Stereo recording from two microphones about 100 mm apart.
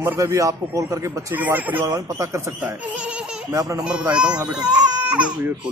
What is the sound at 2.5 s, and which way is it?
Speech, 15° right (ahead or behind).